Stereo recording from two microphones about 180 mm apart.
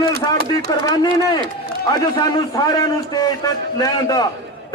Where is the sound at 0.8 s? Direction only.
20° left (ahead or behind).